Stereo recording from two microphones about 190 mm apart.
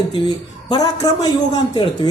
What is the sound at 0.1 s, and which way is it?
A woman's voice, 20° left (ahead or behind).